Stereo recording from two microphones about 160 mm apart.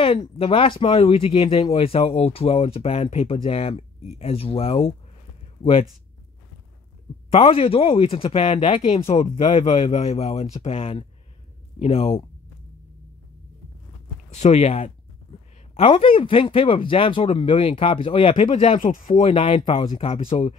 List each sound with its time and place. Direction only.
0.0 s speech: 35° left (ahead or behind)
7.2 s speech: 35° left (ahead or behind)
14.3 s speech: 45° left (ahead or behind)
18.9 s speech: 60° left (ahead or behind)
19.2 s speech: 35° left (ahead or behind)